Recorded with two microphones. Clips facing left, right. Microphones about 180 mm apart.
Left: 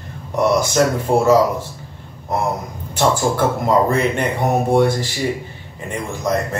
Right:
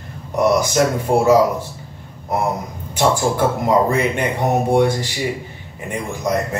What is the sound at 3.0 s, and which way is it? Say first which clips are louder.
Speech: even; 10° right (ahead or behind).